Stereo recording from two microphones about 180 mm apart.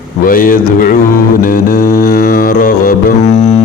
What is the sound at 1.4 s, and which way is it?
Music, 50° left (ahead or behind).